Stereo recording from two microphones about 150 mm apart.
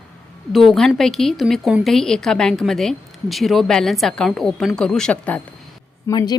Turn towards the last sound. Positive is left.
turn(degrees=25)  # may be behind; listen again after turning